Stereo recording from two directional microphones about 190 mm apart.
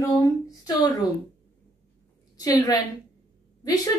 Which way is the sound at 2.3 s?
20° left (ahead or behind).